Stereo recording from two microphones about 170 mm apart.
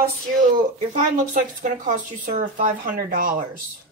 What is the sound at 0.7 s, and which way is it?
Speech, 50° right (ahead or behind).